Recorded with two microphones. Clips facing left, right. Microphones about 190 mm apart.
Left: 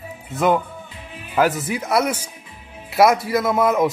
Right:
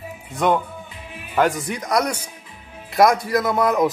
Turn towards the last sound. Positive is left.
turn(degrees=0)  # may be behind; listen again after turning